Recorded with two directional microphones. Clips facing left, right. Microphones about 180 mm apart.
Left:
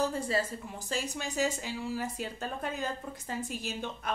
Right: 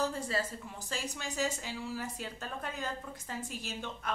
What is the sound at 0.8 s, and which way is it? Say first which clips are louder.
A woman's voice: left 4 dB; 15° left (ahead or behind).